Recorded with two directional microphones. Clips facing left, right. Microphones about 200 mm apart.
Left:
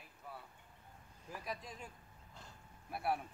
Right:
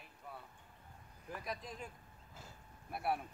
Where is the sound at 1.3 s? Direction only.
Centre (ahead or behind).